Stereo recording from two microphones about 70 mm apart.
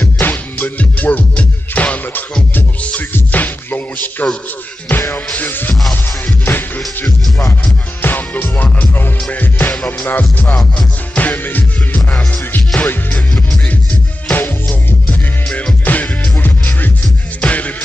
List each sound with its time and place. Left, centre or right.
0.2 s music: left
8.0 s music: left
14.3 s music: left
15.0 s music: centre